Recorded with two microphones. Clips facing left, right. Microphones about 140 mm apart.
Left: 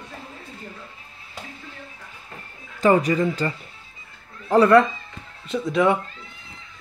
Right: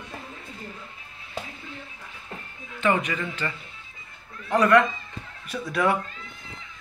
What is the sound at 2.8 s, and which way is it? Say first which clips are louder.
A man's voice: left 7 dB; 35° left (ahead or behind).